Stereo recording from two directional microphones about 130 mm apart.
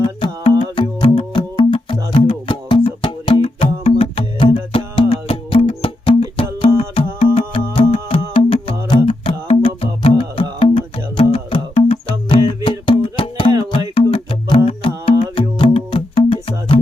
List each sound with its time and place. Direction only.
0.0 s music: 40° left (ahead or behind)